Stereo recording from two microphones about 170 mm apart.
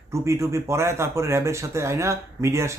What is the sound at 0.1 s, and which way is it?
Speech, 15° right (ahead or behind).